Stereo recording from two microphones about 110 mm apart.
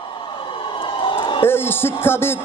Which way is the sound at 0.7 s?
50° left (ahead or behind).